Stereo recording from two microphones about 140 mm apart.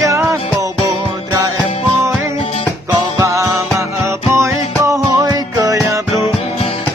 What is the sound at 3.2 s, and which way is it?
Music, 20° right (ahead or behind).